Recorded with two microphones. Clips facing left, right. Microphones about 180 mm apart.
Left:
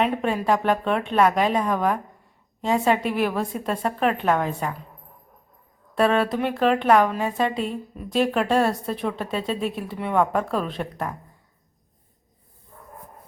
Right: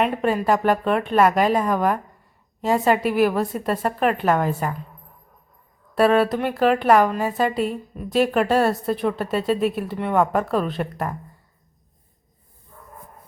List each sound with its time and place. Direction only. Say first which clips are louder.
0.0 s a woman's voice: right 2 dB; centre (ahead or behind)
5.9 s a woman's voice: right 3 dB; 5° right (ahead or behind)